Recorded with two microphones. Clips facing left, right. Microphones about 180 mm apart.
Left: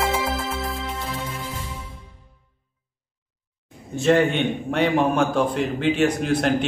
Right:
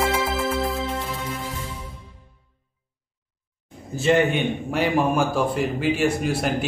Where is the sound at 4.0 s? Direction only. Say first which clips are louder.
Left 1 dB; centre (ahead or behind).